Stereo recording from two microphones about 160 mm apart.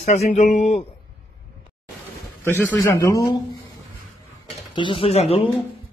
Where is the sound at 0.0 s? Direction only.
45° left (ahead or behind).